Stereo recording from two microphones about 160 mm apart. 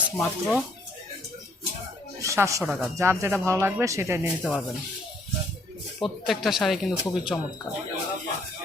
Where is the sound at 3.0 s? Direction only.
15° right (ahead or behind).